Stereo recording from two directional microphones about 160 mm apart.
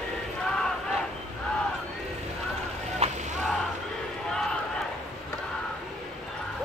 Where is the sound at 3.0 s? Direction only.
40° right (ahead or behind).